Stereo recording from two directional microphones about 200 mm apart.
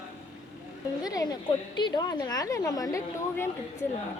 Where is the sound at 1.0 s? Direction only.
20° left (ahead or behind).